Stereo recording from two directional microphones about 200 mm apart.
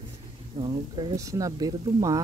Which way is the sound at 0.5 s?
25° right (ahead or behind).